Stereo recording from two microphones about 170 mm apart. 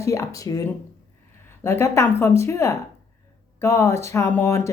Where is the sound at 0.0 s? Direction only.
20° left (ahead or behind).